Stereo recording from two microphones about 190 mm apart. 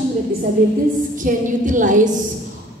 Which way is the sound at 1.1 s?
45° right (ahead or behind).